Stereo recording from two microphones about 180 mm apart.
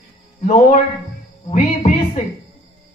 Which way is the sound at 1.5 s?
40° left (ahead or behind).